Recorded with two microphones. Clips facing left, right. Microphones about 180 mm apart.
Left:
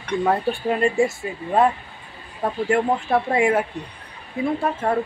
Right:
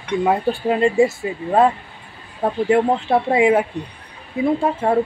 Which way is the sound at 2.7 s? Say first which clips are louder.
Right 3 dB; 20° right (ahead or behind).